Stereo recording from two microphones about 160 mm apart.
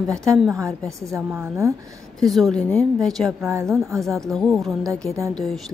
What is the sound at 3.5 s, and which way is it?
Speech, 20° right (ahead or behind).